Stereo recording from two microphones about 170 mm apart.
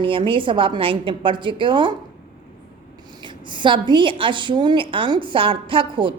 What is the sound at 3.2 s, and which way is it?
A woman's voice, 25° right (ahead or behind).